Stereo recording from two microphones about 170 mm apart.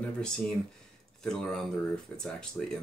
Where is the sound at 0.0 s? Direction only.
5° left (ahead or behind).